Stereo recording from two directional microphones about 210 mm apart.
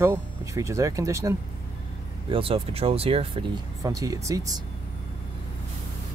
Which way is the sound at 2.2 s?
25° right (ahead or behind).